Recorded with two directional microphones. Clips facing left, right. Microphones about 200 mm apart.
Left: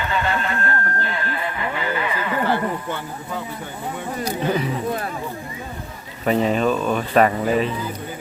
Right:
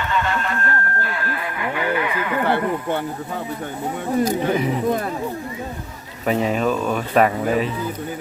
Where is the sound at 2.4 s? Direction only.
60° right (ahead or behind).